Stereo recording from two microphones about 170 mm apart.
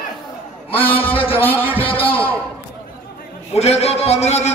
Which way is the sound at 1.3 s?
10° left (ahead or behind).